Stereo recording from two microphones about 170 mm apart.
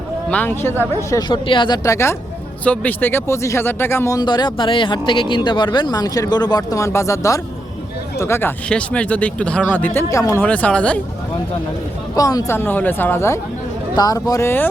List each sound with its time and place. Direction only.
0.3 s speech: 10° left (ahead or behind)
1.3 s speech: 30° left (ahead or behind); by 11.0 s 5° left (ahead or behind)
12.1 s speech: 20° left (ahead or behind)